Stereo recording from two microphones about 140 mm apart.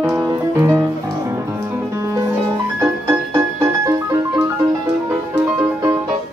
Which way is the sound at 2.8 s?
20° right (ahead or behind).